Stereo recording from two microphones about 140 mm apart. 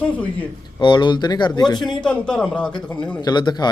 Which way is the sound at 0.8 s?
35° left (ahead or behind).